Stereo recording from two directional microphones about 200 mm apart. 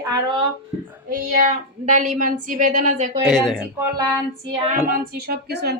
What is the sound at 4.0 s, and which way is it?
Speech, 20° right (ahead or behind).